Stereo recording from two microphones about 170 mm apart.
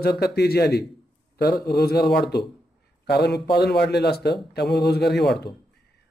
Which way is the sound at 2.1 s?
75° left (ahead or behind).